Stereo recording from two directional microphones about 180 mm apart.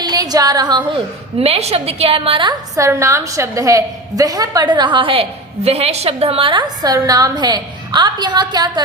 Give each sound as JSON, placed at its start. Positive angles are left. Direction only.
{"t": 0.0, "sound": "a woman's voice", "side_deg": -20}